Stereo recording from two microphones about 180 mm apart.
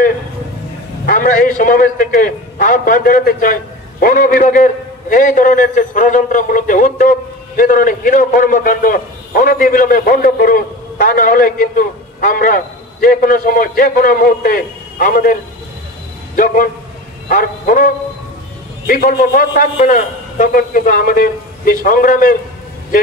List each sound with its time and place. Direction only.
1.0 s a man's voice: 50° left (ahead or behind)
16.3 s a man's voice: 50° left (ahead or behind)